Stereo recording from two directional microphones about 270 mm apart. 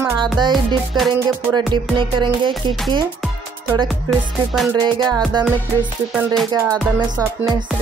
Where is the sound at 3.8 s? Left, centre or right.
Centre.